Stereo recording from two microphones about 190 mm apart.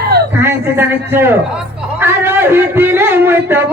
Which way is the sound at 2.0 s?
10° right (ahead or behind).